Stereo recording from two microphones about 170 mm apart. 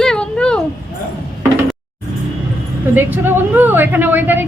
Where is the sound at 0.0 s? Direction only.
5° left (ahead or behind).